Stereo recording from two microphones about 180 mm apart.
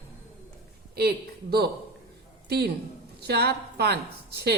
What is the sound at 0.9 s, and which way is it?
A man's voice, 60° right (ahead or behind).